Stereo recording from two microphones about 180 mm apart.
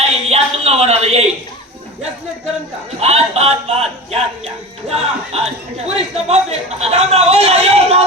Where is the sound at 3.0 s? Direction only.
35° right (ahead or behind).